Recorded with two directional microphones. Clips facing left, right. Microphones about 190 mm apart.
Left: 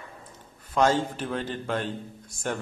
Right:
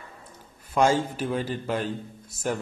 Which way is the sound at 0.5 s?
10° right (ahead or behind).